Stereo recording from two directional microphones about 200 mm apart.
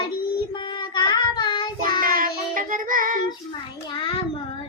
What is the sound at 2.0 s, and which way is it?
Child singing, 45° right (ahead or behind).